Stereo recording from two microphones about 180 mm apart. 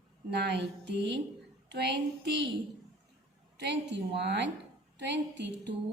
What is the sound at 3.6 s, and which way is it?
A woman's voice, 70° right (ahead or behind).